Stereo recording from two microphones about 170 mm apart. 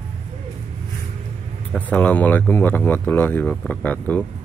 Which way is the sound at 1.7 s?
5° left (ahead or behind).